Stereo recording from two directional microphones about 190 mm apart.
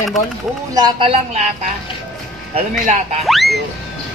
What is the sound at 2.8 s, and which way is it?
Speech, 40° right (ahead or behind).